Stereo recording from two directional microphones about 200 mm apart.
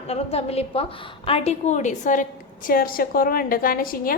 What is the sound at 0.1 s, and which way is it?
A woman's voice, 30° left (ahead or behind).